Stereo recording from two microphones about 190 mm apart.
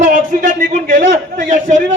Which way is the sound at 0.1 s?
45° right (ahead or behind).